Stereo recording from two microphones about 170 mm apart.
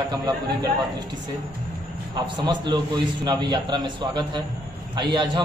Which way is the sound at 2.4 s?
25° right (ahead or behind).